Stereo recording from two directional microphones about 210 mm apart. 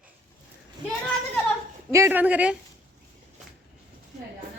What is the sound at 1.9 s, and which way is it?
Speech, 10° right (ahead or behind).